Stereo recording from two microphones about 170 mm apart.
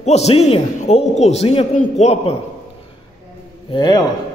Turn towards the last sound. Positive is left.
turn(degrees=25)  # may be behind; listen again after turning